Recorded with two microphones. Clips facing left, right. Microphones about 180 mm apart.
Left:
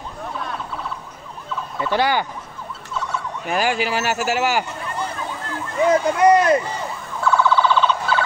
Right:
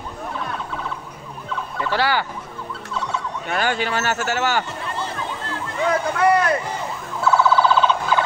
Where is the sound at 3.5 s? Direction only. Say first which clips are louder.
Left 2 dB; 10° left (ahead or behind).